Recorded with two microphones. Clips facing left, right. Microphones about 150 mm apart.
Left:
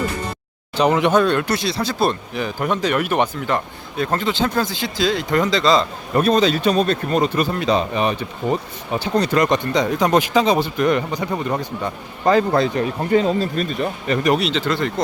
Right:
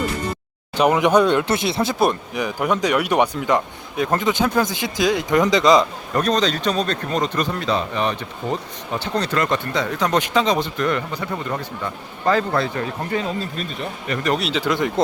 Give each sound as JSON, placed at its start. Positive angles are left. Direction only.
{"t": 0.8, "sound": "speech", "side_deg": -10}
{"t": 6.1, "sound": "speech", "side_deg": 10}
{"t": 14.3, "sound": "speech", "side_deg": 0}
{"t": 14.6, "sound": "speech", "side_deg": -15}